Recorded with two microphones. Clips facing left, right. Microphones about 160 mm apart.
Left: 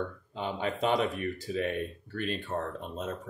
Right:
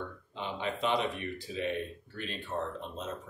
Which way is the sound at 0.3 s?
45° left (ahead or behind).